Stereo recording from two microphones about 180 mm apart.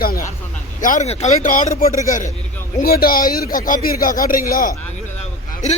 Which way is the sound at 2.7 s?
55° left (ahead or behind).